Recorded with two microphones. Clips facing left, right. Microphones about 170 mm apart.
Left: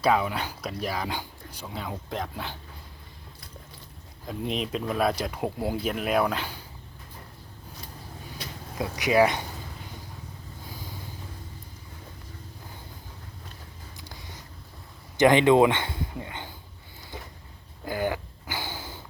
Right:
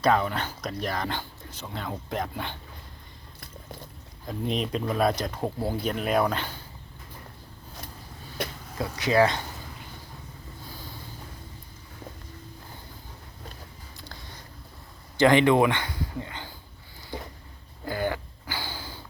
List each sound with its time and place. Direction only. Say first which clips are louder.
0.0 s speech: even; 5° left (ahead or behind)
4.3 s speech: right 1 dB; centre (ahead or behind)
8.4 s a sound: right 10 dB; 55° right (ahead or behind)
8.8 s speech: left 1 dB; 15° left (ahead or behind)
15.2 s speech: left 1 dB; 20° left (ahead or behind)
17.8 s a sound: even; 15° left (ahead or behind)